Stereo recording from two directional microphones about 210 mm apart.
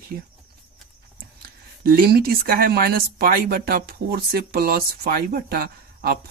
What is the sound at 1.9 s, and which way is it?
Speech, 45° right (ahead or behind).